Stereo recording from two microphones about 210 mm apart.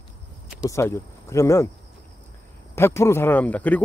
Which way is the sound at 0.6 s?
15° left (ahead or behind).